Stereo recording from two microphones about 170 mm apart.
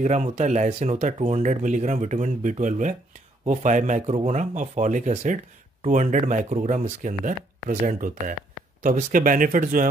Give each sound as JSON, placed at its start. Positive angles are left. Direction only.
{"t": 0.0, "sound": "speech", "side_deg": -45}